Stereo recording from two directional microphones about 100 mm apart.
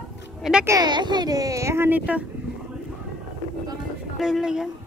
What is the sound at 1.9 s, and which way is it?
Speech, 15° right (ahead or behind).